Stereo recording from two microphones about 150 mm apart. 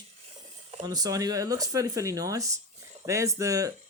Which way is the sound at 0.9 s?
25° right (ahead or behind).